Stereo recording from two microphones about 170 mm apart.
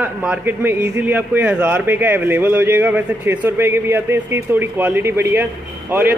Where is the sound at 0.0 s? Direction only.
10° right (ahead or behind).